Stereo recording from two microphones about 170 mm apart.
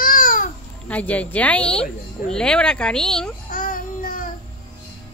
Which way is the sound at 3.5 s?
55° left (ahead or behind).